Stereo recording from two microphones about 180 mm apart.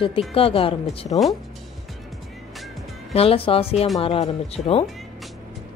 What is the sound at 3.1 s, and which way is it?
Speech, 30° left (ahead or behind).